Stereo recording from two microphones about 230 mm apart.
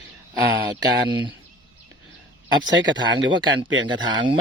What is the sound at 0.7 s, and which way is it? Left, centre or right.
Speech, centre.